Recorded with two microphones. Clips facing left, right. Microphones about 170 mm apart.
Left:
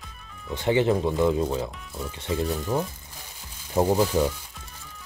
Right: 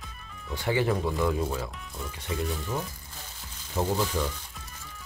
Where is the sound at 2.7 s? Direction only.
55° left (ahead or behind).